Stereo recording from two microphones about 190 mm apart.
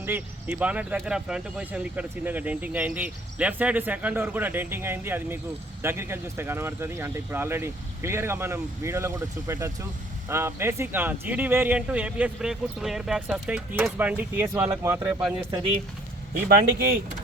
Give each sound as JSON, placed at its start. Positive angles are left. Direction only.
{"t": 0.0, "sound": "speech", "side_deg": -10}
{"t": 16.5, "sound": "speech", "side_deg": -50}